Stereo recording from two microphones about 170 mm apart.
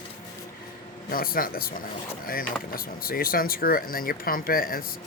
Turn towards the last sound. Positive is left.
turn(degrees=60)  # may be behind; listen again after turning